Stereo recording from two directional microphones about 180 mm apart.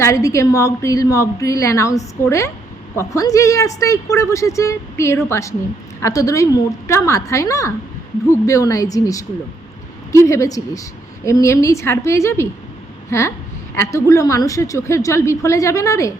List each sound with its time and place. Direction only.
0.0 s speech: 15° left (ahead or behind)